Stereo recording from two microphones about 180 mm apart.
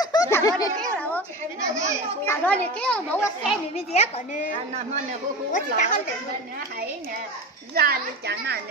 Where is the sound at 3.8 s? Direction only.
35° left (ahead or behind).